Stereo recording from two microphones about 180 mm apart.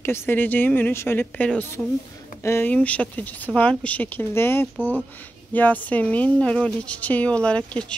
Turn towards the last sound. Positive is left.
turn(degrees=5)  # may be behind; listen again after turning